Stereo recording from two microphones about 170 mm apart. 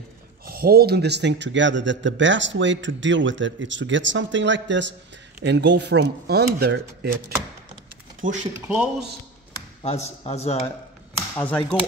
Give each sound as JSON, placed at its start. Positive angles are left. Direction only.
{"t": 0.5, "sound": "speech", "side_deg": -60}
{"t": 8.2, "sound": "speech", "side_deg": -50}
{"t": 8.5, "sound": "a man's voice", "side_deg": -5}
{"t": 9.8, "sound": "speech", "side_deg": 40}
{"t": 11.3, "sound": "speech", "side_deg": 10}